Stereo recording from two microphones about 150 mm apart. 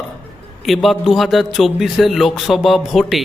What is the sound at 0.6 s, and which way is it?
Speech, centre (ahead or behind).